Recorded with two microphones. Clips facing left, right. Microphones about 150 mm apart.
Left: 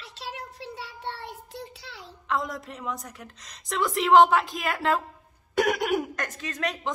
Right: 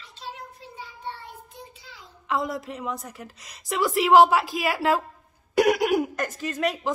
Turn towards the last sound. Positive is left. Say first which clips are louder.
# right 5 dB
turn(degrees=-5)  # may be behind; listen again after turning